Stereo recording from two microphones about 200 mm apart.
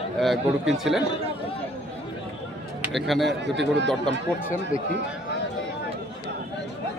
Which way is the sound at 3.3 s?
60° right (ahead or behind).